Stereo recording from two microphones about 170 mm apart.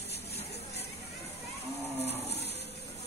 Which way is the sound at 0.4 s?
40° left (ahead or behind).